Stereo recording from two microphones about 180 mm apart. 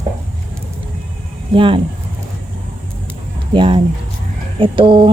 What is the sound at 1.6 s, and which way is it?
Speech, 30° right (ahead or behind).